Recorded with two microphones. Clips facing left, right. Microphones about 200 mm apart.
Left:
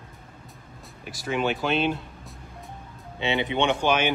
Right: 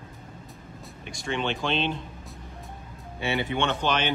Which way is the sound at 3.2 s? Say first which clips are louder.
Left 2 dB; 20° left (ahead or behind).